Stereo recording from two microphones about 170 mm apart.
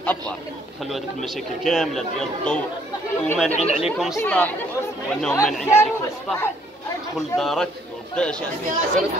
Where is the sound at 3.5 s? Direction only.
35° left (ahead or behind).